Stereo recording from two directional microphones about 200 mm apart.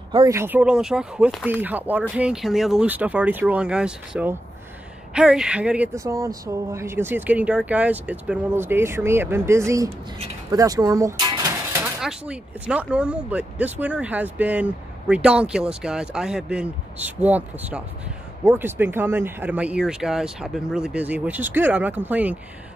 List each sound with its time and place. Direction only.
0.1 s speech: 15° right (ahead or behind)
12.0 s speech: 5° right (ahead or behind)